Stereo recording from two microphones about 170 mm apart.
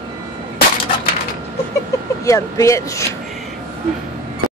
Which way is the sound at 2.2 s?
20° left (ahead or behind).